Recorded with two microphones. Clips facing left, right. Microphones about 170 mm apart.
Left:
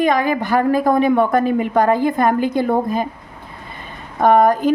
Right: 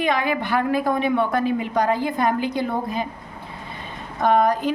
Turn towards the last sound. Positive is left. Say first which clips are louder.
# left 5 dB
turn(degrees=45)  # may be behind; listen again after turning